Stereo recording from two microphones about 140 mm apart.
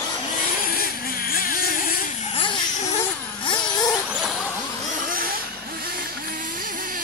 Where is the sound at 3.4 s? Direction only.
35° left (ahead or behind).